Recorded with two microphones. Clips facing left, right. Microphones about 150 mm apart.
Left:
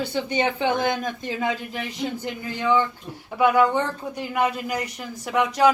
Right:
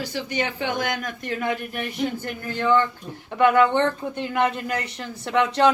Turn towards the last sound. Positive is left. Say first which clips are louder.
# even
turn(degrees=10)  # may be behind; listen again after turning